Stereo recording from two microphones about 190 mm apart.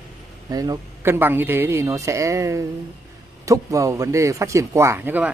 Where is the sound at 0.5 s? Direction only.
20° right (ahead or behind).